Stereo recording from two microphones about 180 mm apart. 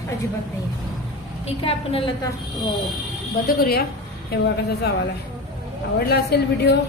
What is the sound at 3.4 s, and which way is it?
Speech, 55° left (ahead or behind).